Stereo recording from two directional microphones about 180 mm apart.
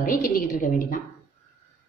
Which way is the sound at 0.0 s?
50° left (ahead or behind).